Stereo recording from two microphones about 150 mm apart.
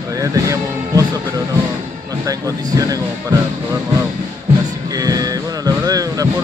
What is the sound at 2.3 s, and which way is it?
Speech, 25° right (ahead or behind).